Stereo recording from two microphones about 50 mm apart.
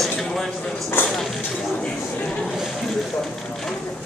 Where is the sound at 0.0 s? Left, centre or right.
Centre.